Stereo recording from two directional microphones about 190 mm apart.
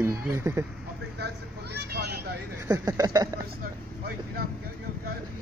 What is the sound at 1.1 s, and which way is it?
Speech, 60° right (ahead or behind).